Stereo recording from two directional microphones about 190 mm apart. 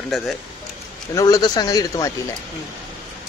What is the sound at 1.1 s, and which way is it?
Speech, 20° left (ahead or behind).